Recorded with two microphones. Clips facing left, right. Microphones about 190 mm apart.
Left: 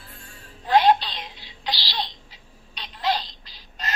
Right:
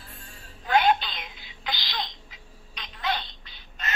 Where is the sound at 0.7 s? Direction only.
35° left (ahead or behind).